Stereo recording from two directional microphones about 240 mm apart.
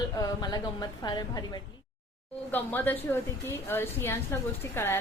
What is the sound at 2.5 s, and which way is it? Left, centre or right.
A woman's voice, centre.